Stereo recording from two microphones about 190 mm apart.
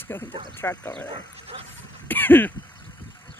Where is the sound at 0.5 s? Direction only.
10° left (ahead or behind).